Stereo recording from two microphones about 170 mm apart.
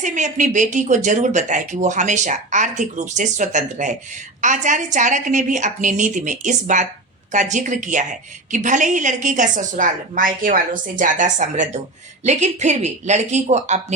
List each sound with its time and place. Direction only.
0.0 s speech: 45° right (ahead or behind)